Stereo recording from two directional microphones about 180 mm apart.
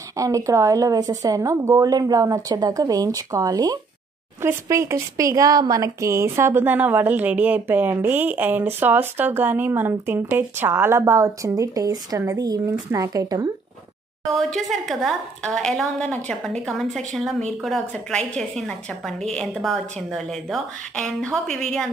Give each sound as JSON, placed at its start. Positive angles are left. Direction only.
{"t": 0.2, "sound": "speech", "side_deg": -15}
{"t": 14.3, "sound": "a woman's voice", "side_deg": 0}